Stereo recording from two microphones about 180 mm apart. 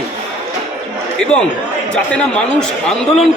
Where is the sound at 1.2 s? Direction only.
5° left (ahead or behind).